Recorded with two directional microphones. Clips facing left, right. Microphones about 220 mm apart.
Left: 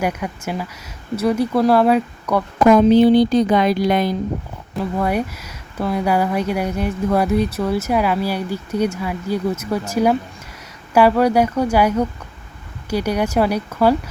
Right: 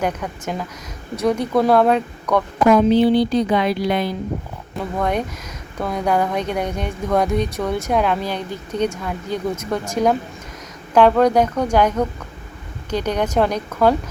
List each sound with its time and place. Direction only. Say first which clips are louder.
0.0 s speech: left 1 dB; 10° left (ahead or behind)
2.6 s a woman's voice: left 3 dB; 45° left (ahead or behind)
4.8 s speech: left 2 dB; 5° left (ahead or behind)